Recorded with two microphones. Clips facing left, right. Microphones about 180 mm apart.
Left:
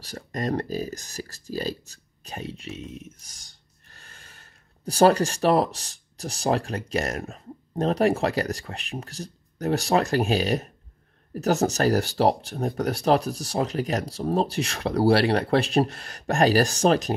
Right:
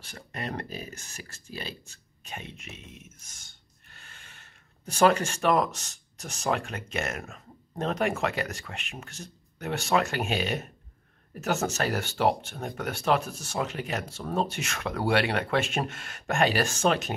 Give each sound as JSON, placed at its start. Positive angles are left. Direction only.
{"t": 0.0, "sound": "speech", "side_deg": 40}